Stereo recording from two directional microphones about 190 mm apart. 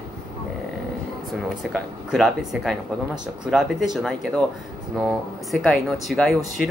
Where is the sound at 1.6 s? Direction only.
5° right (ahead or behind).